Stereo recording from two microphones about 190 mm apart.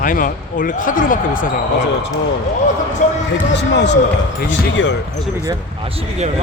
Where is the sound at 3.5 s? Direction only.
65° left (ahead or behind).